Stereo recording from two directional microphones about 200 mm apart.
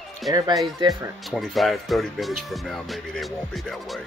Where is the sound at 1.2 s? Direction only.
Centre (ahead or behind).